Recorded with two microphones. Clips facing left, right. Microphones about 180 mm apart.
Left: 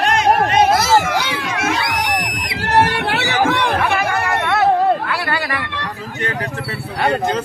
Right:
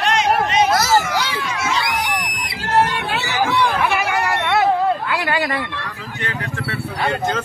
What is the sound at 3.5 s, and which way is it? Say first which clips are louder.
Chatter: left 1 dB; 70° left (ahead or behind).